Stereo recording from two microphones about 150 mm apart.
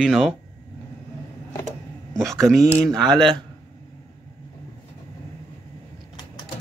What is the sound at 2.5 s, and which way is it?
Speech, 15° right (ahead or behind).